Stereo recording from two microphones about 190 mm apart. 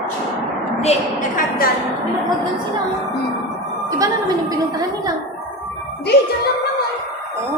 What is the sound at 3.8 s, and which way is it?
Speech, 20° right (ahead or behind).